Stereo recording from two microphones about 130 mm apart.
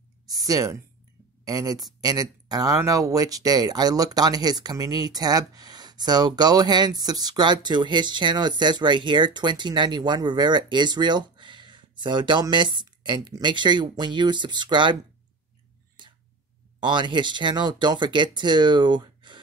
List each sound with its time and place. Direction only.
0.5 s speech: 25° right (ahead or behind)
16.8 s speech: 35° right (ahead or behind)